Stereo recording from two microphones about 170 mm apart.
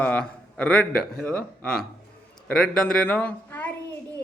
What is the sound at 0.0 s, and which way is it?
Speech, 10° left (ahead or behind).